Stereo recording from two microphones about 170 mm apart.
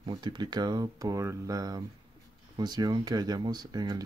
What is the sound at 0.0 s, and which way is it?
Speech, 25° right (ahead or behind).